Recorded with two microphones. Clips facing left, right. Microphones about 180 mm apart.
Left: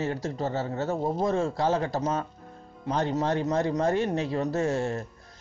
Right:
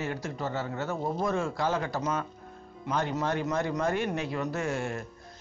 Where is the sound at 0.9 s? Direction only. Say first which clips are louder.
Left 3 dB; 25° left (ahead or behind).